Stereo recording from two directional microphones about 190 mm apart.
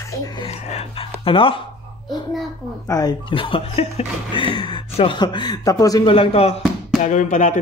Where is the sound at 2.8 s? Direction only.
20° left (ahead or behind).